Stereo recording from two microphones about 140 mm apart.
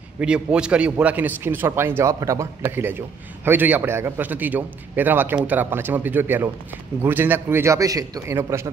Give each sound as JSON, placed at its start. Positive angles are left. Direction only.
{"t": 0.2, "sound": "a man's voice", "side_deg": -5}